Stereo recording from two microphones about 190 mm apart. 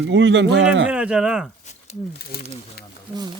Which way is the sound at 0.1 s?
70° right (ahead or behind).